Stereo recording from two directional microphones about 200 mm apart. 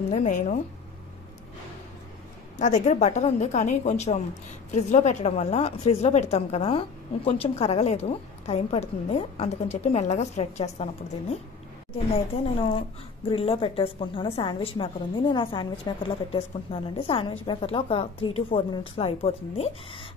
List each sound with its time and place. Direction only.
0.1 s a woman's voice: 40° left (ahead or behind)
2.6 s a woman's voice: 35° left (ahead or behind)
13.3 s a woman's voice: 30° left (ahead or behind)